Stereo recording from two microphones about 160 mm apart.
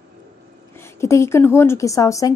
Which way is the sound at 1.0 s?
15° left (ahead or behind).